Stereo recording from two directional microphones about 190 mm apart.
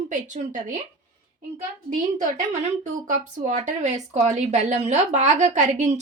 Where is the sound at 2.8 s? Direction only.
40° right (ahead or behind).